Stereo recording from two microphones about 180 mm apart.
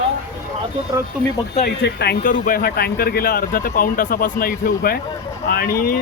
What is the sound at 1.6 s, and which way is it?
Speech, 65° left (ahead or behind).